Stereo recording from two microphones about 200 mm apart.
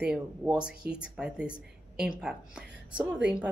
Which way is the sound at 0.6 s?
5° right (ahead or behind).